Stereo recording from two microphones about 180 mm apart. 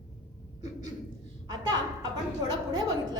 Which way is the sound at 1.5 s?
20° right (ahead or behind).